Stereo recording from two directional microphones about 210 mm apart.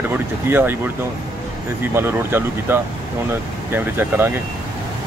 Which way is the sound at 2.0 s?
10° right (ahead or behind).